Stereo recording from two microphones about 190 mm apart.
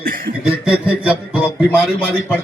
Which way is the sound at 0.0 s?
50° right (ahead or behind).